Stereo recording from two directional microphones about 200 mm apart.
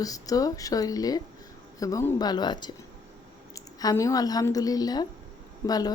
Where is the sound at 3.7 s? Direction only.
15° left (ahead or behind).